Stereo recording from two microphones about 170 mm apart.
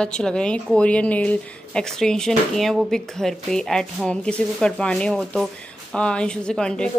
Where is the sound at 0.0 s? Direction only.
5° left (ahead or behind).